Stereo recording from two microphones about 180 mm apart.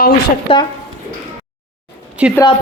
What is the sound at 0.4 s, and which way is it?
Speech, 25° left (ahead or behind).